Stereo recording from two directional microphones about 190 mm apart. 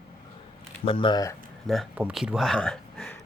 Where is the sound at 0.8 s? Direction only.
25° left (ahead or behind).